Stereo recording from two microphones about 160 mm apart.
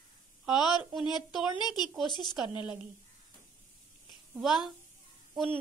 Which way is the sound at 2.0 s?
30° left (ahead or behind).